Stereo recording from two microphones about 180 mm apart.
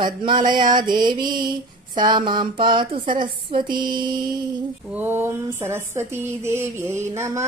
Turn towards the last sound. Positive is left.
turn(degrees=-15)  # may be behind; listen again after turning